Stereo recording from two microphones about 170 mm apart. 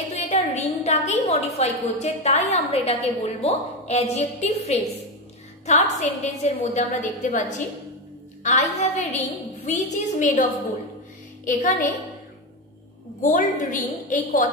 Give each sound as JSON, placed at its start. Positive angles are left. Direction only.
{"t": 0.1, "sound": "a woman's voice", "side_deg": 40}
{"t": 11.4, "sound": "a woman's voice", "side_deg": 50}
{"t": 13.2, "sound": "a woman's voice", "side_deg": 50}